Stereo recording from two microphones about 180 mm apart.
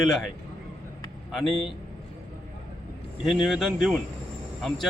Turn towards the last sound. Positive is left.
turn(degrees=0)  # may be behind; listen again after turning